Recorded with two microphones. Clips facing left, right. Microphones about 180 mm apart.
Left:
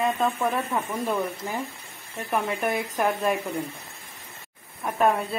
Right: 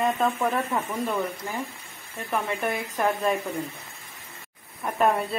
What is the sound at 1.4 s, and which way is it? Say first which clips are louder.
Speech: left 2 dB; 20° left (ahead or behind).